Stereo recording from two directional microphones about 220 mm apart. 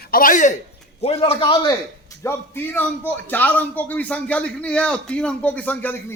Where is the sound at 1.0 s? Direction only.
25° left (ahead or behind).